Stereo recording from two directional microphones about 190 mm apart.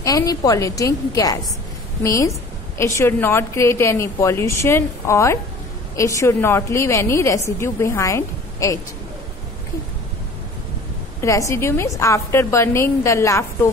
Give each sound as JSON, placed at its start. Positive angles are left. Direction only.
{"t": 0.0, "sound": "a woman's voice", "side_deg": 20}
{"t": 11.1, "sound": "a woman's voice", "side_deg": 15}